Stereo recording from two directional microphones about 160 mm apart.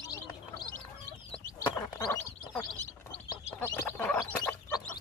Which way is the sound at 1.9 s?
20° left (ahead or behind).